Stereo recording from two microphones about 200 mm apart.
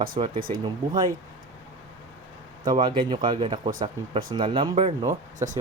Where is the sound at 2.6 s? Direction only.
25° right (ahead or behind).